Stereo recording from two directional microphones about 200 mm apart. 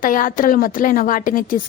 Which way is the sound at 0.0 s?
45° left (ahead or behind).